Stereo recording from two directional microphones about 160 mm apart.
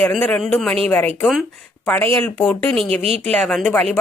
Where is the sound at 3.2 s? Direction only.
5° left (ahead or behind).